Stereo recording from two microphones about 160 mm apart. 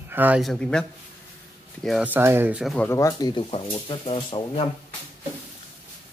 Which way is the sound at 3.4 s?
35° left (ahead or behind).